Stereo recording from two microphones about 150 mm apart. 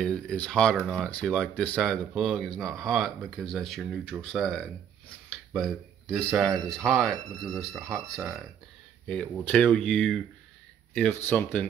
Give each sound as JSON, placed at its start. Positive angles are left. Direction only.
{"t": 0.0, "sound": "speech", "side_deg": 5}
{"t": 9.0, "sound": "speech", "side_deg": 5}
{"t": 11.2, "sound": "speech", "side_deg": 10}